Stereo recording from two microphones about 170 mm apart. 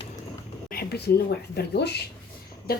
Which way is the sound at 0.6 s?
65° left (ahead or behind).